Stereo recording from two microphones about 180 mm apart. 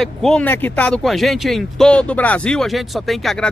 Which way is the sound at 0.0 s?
Centre (ahead or behind).